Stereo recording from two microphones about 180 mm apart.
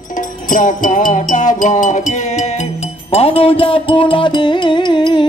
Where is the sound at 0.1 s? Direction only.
45° left (ahead or behind).